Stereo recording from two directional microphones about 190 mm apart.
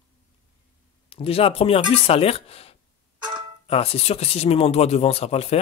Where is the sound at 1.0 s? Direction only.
30° left (ahead or behind).